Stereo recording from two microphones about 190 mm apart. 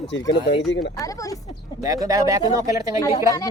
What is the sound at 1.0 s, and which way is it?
Speech, 20° left (ahead or behind).